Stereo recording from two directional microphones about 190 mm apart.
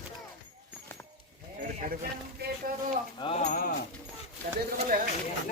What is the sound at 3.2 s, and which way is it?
Speech, 30° left (ahead or behind).